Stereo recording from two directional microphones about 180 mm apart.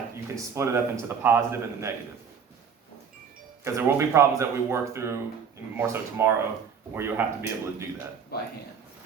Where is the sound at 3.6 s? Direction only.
15° right (ahead or behind).